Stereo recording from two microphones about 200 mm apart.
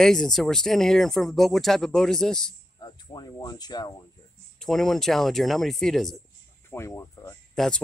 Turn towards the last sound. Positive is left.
turn(degrees=5)  # may be behind; listen again after turning